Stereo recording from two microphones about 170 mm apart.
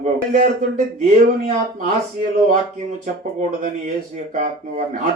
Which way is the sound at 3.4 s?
50° right (ahead or behind).